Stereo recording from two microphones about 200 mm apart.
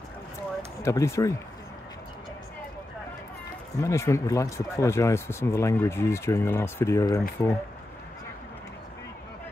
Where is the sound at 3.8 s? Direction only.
15° left (ahead or behind).